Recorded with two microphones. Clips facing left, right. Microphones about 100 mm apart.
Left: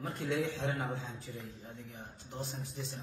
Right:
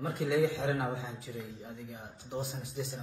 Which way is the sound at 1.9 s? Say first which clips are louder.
Right 6 dB; 10° right (ahead or behind).